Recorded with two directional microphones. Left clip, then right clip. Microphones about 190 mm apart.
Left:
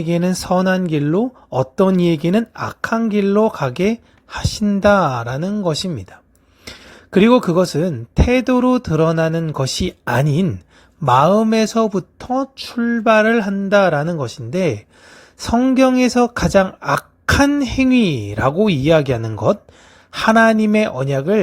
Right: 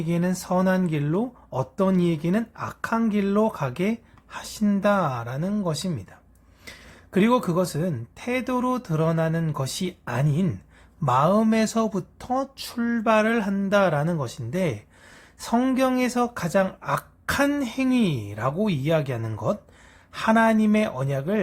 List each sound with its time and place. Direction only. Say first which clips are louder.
0.0 s speech: left 8 dB; 35° left (ahead or behind)